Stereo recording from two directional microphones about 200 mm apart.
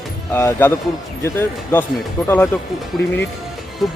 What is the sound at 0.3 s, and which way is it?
Speech, 10° left (ahead or behind).